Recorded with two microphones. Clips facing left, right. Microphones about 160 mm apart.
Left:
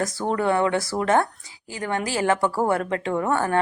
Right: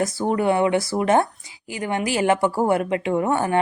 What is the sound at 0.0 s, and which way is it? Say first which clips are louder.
Speech: right 3 dB; 10° right (ahead or behind).